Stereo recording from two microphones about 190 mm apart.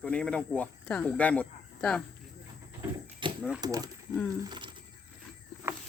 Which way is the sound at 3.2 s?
25° right (ahead or behind).